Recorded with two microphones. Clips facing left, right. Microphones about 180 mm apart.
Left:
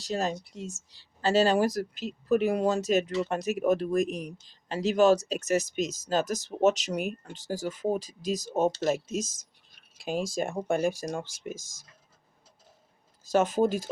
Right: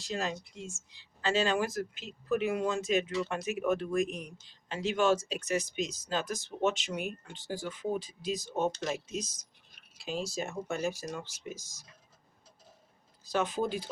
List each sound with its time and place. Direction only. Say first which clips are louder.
0.0 s speech: left 5 dB; 40° left (ahead or behind)
13.2 s speech: left 7 dB; 45° left (ahead or behind)